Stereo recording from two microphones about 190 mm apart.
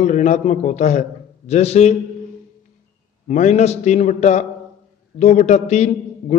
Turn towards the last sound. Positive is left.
turn(degrees=35)  # may be behind; listen again after turning